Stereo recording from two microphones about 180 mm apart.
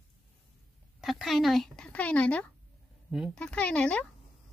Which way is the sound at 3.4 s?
5° left (ahead or behind).